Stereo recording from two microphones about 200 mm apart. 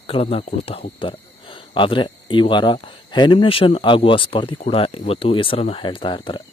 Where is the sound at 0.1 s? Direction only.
30° left (ahead or behind).